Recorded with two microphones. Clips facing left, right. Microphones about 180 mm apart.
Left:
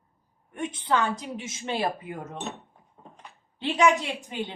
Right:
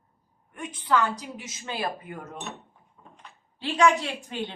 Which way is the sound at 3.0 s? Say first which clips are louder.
Left 3 dB; 40° left (ahead or behind).